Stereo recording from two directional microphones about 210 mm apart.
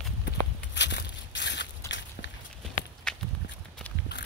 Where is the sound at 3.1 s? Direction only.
5° left (ahead or behind).